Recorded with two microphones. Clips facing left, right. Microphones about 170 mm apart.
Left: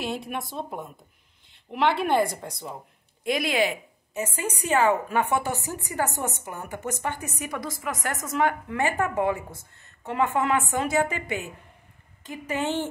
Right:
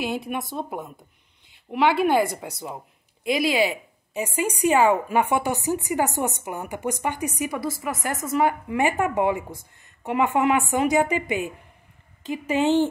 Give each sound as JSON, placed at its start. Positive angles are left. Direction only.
{"t": 0.0, "sound": "a woman's voice", "side_deg": 0}
{"t": 3.5, "sound": "a woman's voice", "side_deg": -10}